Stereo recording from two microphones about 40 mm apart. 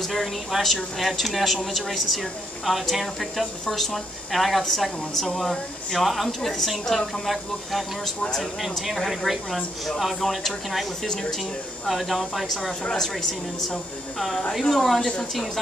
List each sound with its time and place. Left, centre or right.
0.0 s a woman's voice: centre
11.1 s speech: centre
11.9 s a woman's voice: centre
14.5 s a woman's voice: centre